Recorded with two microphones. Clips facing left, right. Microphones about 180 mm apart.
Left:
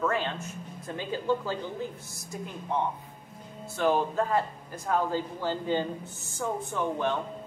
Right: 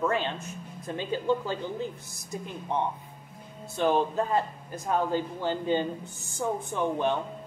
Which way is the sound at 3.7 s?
20° right (ahead or behind).